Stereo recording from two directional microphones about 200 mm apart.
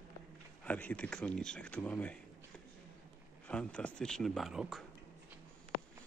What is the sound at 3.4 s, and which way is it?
Speech, 5° left (ahead or behind).